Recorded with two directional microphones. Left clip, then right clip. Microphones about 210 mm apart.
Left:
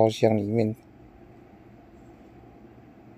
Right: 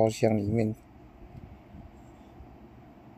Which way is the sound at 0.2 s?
10° left (ahead or behind).